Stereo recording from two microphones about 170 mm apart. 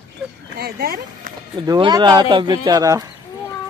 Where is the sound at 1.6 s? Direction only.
25° right (ahead or behind).